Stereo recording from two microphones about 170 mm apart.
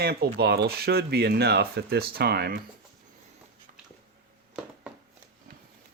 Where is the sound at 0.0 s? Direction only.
70° right (ahead or behind).